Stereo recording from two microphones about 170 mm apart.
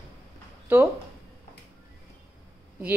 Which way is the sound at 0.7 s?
10° right (ahead or behind).